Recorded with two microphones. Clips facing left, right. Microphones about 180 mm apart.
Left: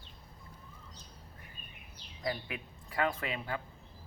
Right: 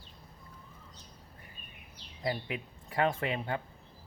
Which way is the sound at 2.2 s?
25° right (ahead or behind).